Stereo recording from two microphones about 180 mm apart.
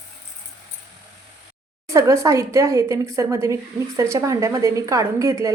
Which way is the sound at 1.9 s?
15° right (ahead or behind).